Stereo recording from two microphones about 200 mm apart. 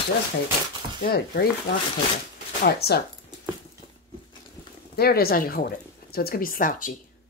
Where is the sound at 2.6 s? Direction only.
50° left (ahead or behind).